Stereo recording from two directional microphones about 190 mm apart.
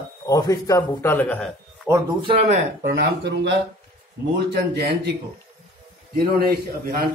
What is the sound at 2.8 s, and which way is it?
Speech, 65° right (ahead or behind).